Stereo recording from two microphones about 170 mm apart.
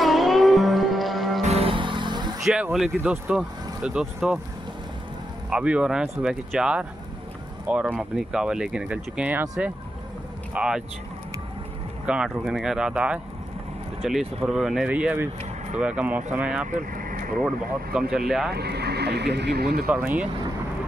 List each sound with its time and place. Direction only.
0.0 s music: centre (ahead or behind)
1.4 s music: 35° right (ahead or behind)
2.4 s speech: 5° right (ahead or behind)
5.5 s speech: 5° right (ahead or behind)
12.1 s speech: 5° right (ahead or behind)
16.7 s vehicle: 55° right (ahead or behind)
17.9 s speech: 5° right (ahead or behind)
18.5 s speech: 70° right (ahead or behind)
19.9 s speech: 10° right (ahead or behind)